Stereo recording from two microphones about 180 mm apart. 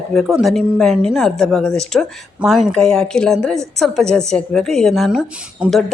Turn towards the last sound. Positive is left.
turn(degrees=-5)  # may be behind; listen again after turning